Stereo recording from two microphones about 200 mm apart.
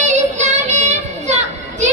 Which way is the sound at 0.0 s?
35° right (ahead or behind).